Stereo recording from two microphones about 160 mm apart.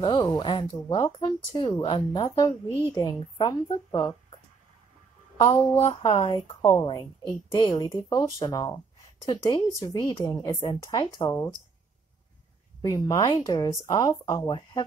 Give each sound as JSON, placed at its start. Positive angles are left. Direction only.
{"t": 0.0, "sound": "speech", "side_deg": 25}
{"t": 1.8, "sound": "speech", "side_deg": 35}
{"t": 2.1, "sound": "speech", "side_deg": 25}
{"t": 5.4, "sound": "speech", "side_deg": 25}
{"t": 12.8, "sound": "speech", "side_deg": 25}